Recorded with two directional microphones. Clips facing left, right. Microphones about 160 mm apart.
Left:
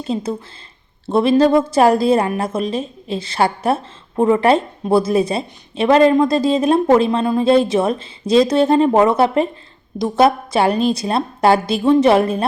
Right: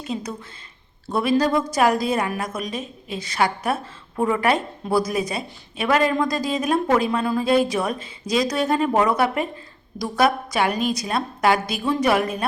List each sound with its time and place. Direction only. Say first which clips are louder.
0.0 s a woman's voice: left 7 dB; 30° left (ahead or behind)